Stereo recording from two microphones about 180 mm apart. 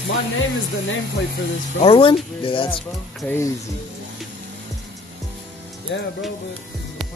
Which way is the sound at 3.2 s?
15° left (ahead or behind).